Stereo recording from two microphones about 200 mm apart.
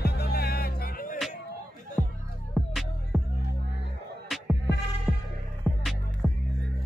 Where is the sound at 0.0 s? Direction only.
50° left (ahead or behind).